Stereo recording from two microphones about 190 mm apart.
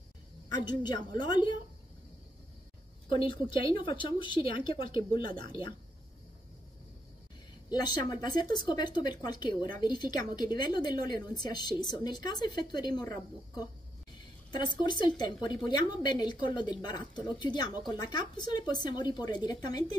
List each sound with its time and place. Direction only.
0.7 s speech: 20° left (ahead or behind)
3.1 s speech: 25° left (ahead or behind)
7.7 s speech: 20° left (ahead or behind)
14.8 s speech: 25° left (ahead or behind)